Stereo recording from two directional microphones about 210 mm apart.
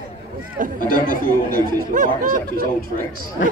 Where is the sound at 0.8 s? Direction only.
40° right (ahead or behind).